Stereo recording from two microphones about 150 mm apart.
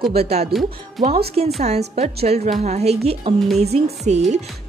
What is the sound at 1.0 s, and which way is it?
Speech, centre (ahead or behind).